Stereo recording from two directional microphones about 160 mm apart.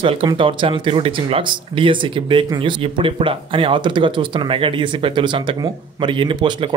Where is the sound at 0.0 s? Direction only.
30° right (ahead or behind).